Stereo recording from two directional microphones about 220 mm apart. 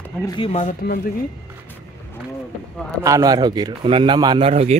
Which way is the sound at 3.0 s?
15° right (ahead or behind).